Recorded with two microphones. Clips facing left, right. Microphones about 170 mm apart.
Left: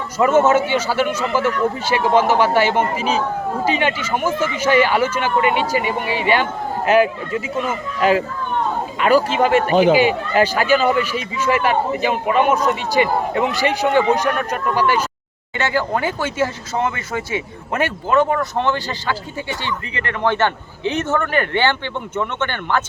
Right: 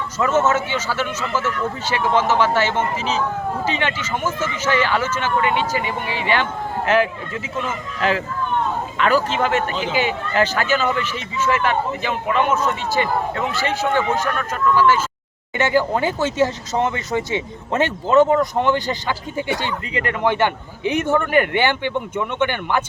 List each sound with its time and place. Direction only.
0.2 s speech: 10° left (ahead or behind)
15.5 s a man's voice: 20° right (ahead or behind)